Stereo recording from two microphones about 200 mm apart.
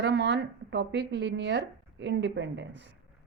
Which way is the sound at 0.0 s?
60° right (ahead or behind).